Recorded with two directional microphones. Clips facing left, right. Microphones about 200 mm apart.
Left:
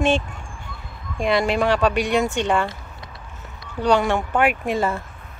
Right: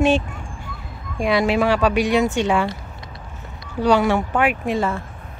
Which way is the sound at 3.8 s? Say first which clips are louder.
Right 2 dB; 5° right (ahead or behind).